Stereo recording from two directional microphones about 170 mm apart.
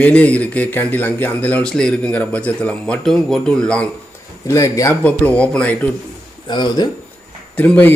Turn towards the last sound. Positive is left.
turn(degrees=10)  # may be behind; listen again after turning